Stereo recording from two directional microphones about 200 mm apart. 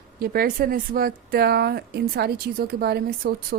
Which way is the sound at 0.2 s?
45° right (ahead or behind).